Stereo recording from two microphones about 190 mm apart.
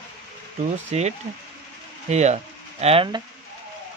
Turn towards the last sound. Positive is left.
turn(degrees=-25)  # may be behind; listen again after turning